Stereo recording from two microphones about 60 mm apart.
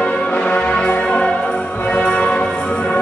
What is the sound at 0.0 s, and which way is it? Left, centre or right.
Music, left.